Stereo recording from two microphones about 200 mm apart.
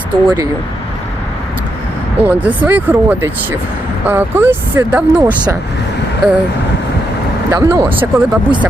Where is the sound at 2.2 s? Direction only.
5° right (ahead or behind).